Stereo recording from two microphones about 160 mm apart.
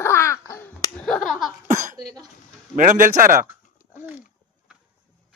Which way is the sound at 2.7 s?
60° right (ahead or behind).